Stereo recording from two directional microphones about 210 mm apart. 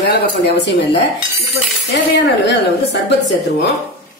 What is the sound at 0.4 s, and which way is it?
Speech, 55° left (ahead or behind).